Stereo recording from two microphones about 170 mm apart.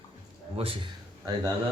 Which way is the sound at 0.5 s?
35° right (ahead or behind).